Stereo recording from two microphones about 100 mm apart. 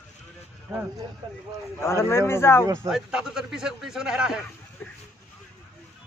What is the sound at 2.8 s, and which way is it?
A man's voice, 5° right (ahead or behind).